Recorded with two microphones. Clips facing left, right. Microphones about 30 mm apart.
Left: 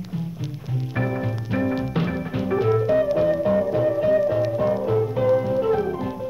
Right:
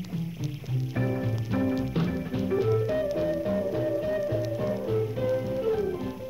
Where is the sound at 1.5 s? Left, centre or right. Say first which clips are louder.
Left 4 dB; left.